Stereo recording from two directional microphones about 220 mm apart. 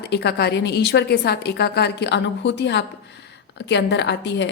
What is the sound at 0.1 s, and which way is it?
A woman's voice, 50° left (ahead or behind).